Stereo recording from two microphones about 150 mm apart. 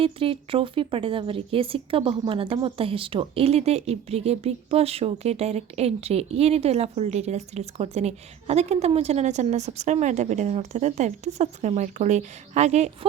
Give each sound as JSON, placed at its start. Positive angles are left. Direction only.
{"t": 0.0, "sound": "speech", "side_deg": -35}